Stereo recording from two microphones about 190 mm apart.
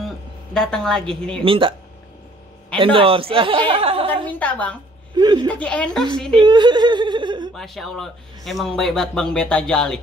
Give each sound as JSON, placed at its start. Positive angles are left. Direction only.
{"t": 0.6, "sound": "speech", "side_deg": 5}
{"t": 1.4, "sound": "a woman's voice", "side_deg": -30}
{"t": 2.8, "sound": "a woman's voice", "side_deg": -30}
{"t": 4.4, "sound": "a woman's voice", "side_deg": 10}
{"t": 5.1, "sound": "speech", "side_deg": -25}
{"t": 5.5, "sound": "speech", "side_deg": 5}
{"t": 6.3, "sound": "a woman's voice", "side_deg": -25}
{"t": 7.5, "sound": "speech", "side_deg": 0}